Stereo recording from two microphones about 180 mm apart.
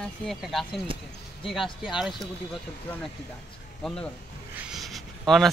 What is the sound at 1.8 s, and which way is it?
Speech, centre (ahead or behind).